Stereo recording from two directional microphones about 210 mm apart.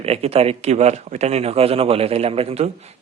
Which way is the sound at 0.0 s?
30° right (ahead or behind).